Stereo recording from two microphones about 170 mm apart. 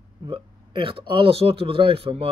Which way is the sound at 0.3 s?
30° right (ahead or behind).